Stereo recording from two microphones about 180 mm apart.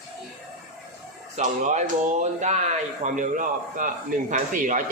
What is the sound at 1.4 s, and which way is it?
A man's voice, 40° right (ahead or behind).